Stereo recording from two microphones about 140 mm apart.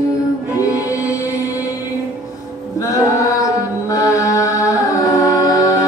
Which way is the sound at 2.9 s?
25° left (ahead or behind).